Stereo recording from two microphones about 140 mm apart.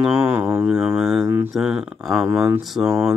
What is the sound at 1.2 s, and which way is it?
Speech, 15° right (ahead or behind).